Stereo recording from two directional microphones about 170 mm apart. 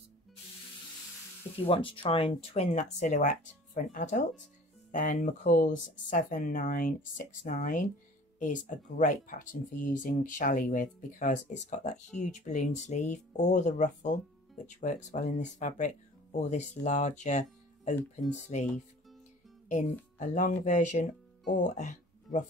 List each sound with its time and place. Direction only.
1.7 s speech: 35° left (ahead or behind)
19.7 s speech: 45° left (ahead or behind)